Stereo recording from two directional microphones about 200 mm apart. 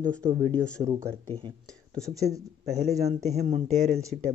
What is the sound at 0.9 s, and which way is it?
Speech, 15° right (ahead or behind).